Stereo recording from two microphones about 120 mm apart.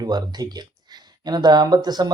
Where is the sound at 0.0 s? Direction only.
35° right (ahead or behind).